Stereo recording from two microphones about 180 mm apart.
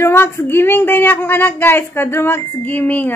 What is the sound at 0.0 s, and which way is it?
Speech, 15° left (ahead or behind).